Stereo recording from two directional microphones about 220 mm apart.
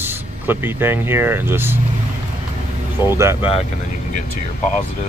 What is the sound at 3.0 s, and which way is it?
Speech, 10° right (ahead or behind).